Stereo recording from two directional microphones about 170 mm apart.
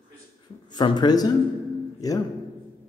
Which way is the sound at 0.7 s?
25° left (ahead or behind).